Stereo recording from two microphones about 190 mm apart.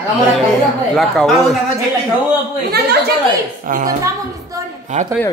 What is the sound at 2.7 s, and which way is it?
Speech, 60° right (ahead or behind).